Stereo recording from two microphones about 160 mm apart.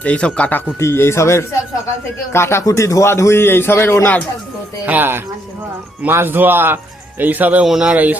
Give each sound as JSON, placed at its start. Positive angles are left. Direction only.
{"t": 0.0, "sound": "a man's voice", "side_deg": 5}
{"t": 4.9, "sound": "speech", "side_deg": -10}